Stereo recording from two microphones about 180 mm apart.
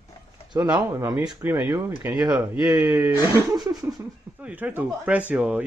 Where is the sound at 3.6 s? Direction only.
20° right (ahead or behind).